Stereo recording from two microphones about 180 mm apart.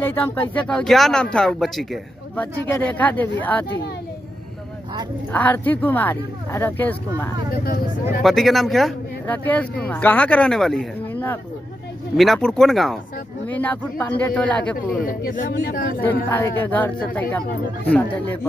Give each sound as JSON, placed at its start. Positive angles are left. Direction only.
{"t": 0.0, "sound": "speech", "side_deg": 10}
{"t": 5.3, "sound": "speech", "side_deg": 10}
{"t": 7.5, "sound": "speech", "side_deg": 55}
{"t": 8.2, "sound": "speech", "side_deg": 0}
{"t": 15.0, "sound": "speech", "side_deg": 50}
{"t": 15.5, "sound": "speech", "side_deg": 60}
{"t": 16.3, "sound": "speech", "side_deg": 10}